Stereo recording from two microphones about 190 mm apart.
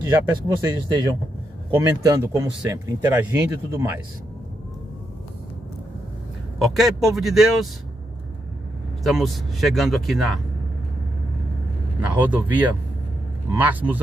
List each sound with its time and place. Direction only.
0.3 s speech: 20° right (ahead or behind)
6.6 s speech: centre (ahead or behind)
9.0 s speech: centre (ahead or behind)
12.1 s speech: 10° right (ahead or behind)